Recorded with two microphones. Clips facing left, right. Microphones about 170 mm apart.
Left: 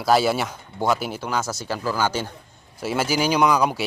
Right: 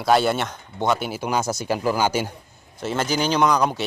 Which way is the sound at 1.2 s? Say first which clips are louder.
Right 3 dB; 15° right (ahead or behind).